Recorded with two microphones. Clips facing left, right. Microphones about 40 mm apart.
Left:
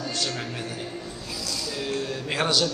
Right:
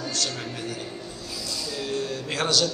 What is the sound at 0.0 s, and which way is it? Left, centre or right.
Speech, centre.